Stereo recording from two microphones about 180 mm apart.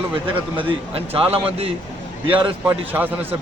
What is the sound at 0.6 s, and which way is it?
A man's voice, 30° right (ahead or behind).